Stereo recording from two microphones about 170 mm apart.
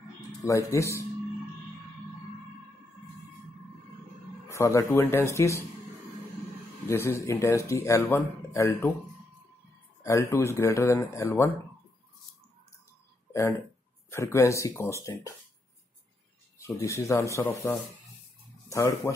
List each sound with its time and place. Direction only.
0.5 s speech: 15° left (ahead or behind)
4.5 s speech: 15° left (ahead or behind)
6.9 s speech: 15° left (ahead or behind)
10.0 s speech: 15° left (ahead or behind)
13.3 s speech: 15° left (ahead or behind)
16.8 s speech: 20° left (ahead or behind)